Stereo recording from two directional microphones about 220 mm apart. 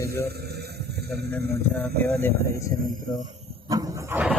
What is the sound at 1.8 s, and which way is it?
Speech, 5° left (ahead or behind).